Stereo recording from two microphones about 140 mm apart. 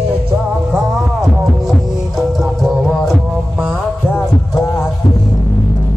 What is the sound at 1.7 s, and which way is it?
Heart sounds, centre (ahead or behind).